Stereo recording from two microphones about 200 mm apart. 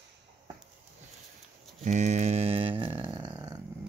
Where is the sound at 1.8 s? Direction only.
35° right (ahead or behind).